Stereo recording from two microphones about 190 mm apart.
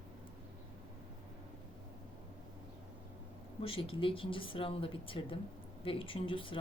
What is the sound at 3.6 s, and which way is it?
Speech, 30° left (ahead or behind).